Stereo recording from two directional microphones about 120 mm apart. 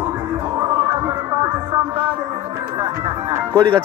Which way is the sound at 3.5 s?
40° right (ahead or behind).